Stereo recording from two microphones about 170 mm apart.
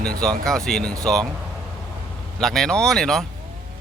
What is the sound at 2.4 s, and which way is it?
Speech, 5° left (ahead or behind).